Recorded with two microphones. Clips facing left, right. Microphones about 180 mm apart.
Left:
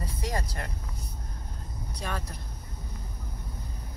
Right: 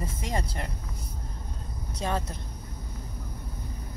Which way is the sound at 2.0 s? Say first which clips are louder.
Right 6 dB; 25° right (ahead or behind).